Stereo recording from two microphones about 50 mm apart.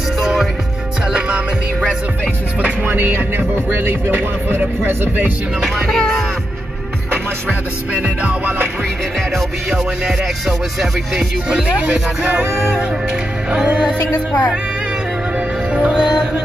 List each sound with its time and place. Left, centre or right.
0.2 s music: centre
2.6 s music: right
4.8 s speech: right
5.9 s speech: centre
7.9 s music: right
10.8 s music: centre
11.5 s music: right
13.7 s music: right
14.1 s speech: left
15.7 s music: centre